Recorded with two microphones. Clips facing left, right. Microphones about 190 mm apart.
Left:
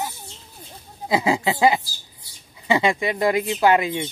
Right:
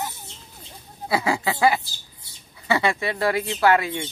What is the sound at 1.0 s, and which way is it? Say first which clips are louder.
Speech: left 3 dB; 20° left (ahead or behind).